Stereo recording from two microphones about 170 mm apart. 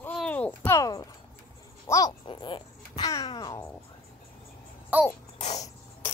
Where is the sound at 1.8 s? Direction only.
20° left (ahead or behind).